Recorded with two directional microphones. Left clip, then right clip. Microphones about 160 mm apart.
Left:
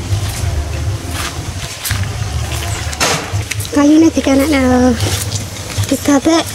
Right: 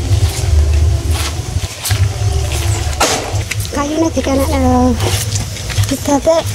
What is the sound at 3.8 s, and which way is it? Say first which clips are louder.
Speech: left 6 dB; 5° left (ahead or behind).